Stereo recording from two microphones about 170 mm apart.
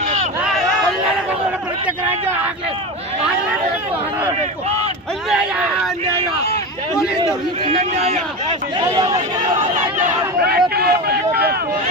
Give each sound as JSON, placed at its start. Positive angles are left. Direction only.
{"t": 5.3, "sound": "speech", "side_deg": -5}
{"t": 7.6, "sound": "speech", "side_deg": -35}
{"t": 10.4, "sound": "a sound", "side_deg": -70}